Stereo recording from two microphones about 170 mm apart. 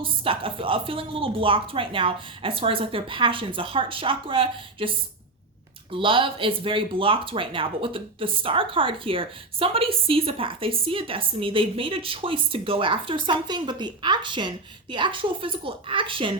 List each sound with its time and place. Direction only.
0.0 s speech: 30° right (ahead or behind)